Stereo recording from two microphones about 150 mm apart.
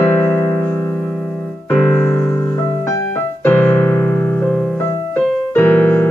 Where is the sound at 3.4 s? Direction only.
10° left (ahead or behind).